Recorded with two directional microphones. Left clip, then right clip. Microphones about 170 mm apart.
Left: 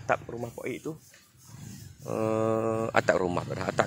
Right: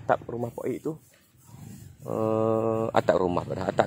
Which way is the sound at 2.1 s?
20° right (ahead or behind).